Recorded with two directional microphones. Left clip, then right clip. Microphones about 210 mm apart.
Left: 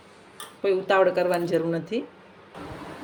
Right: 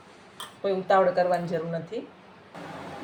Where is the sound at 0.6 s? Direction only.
45° left (ahead or behind).